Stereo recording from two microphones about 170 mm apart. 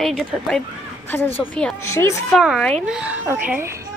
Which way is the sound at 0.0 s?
Centre (ahead or behind).